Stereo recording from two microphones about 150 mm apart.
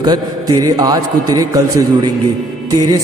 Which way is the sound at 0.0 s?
25° right (ahead or behind).